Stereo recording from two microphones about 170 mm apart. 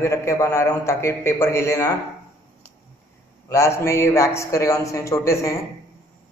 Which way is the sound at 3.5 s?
15° left (ahead or behind).